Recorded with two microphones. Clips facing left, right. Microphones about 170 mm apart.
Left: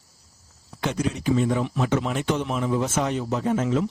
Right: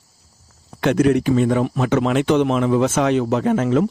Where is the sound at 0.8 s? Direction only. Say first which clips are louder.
Right 11 dB; 65° right (ahead or behind).